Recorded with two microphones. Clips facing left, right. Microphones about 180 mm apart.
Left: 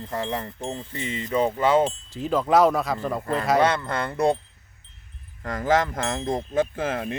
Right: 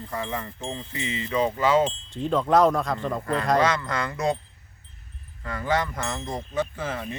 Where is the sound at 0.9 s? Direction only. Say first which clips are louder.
Even; 50° left (ahead or behind).